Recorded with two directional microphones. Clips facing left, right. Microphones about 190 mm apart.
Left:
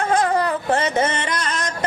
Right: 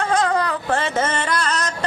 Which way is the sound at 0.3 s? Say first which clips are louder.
Left 2 dB; 20° left (ahead or behind).